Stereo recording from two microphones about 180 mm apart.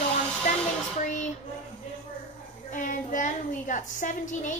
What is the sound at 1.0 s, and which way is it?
Speech, 45° left (ahead or behind).